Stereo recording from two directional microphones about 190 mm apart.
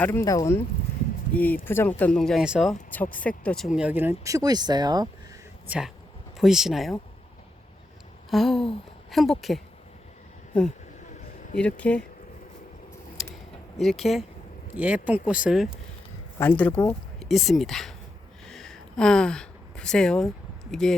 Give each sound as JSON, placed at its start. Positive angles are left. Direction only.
{"t": 0.0, "sound": "speech", "side_deg": 15}
{"t": 2.9, "sound": "speech", "side_deg": 10}
{"t": 3.8, "sound": "speech", "side_deg": -10}
{"t": 5.6, "sound": "speech", "side_deg": -5}
{"t": 8.3, "sound": "a woman's voice", "side_deg": 0}
{"t": 11.5, "sound": "speech", "side_deg": 5}
{"t": 13.2, "sound": "a sound", "side_deg": 0}
{"t": 13.7, "sound": "speech", "side_deg": 0}
{"t": 16.4, "sound": "speech", "side_deg": 10}
{"t": 18.4, "sound": "a sound", "side_deg": 0}